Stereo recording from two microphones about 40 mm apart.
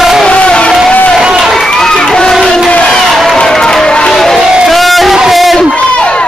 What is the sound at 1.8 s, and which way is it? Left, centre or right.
Crowd, centre.